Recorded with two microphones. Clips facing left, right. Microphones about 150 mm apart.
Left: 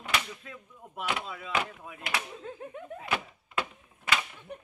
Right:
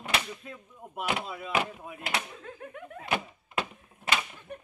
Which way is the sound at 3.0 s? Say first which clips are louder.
Right 3 dB; 30° right (ahead or behind).